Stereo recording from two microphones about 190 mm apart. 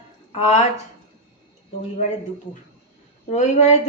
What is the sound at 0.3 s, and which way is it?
Speech, 35° left (ahead or behind).